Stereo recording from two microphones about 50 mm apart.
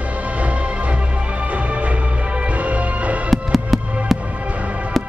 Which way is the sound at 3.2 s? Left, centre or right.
Centre.